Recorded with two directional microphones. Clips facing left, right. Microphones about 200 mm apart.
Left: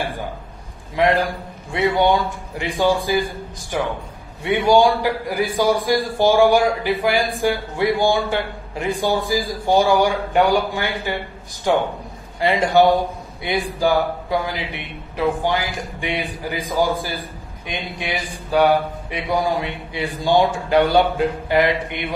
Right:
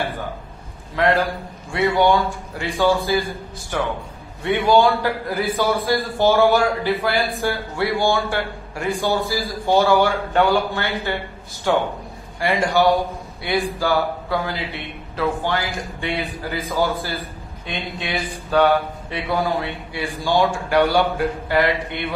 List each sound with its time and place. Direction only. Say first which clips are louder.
0.9 s speech: left 1 dB; 15° left (ahead or behind)
4.4 s speech: left 1 dB; 15° left (ahead or behind)